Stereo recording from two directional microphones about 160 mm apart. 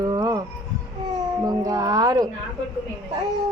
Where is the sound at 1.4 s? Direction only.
25° right (ahead or behind).